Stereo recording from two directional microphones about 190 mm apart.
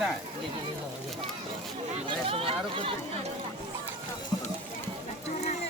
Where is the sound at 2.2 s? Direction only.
30° right (ahead or behind).